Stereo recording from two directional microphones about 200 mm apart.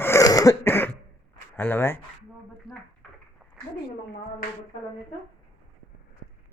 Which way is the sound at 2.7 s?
25° right (ahead or behind).